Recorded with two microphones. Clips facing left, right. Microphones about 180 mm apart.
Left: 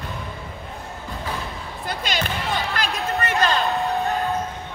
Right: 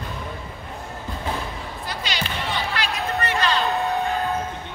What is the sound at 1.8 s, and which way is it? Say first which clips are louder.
Basketball bounce: left 5 dB; 50° left (ahead or behind).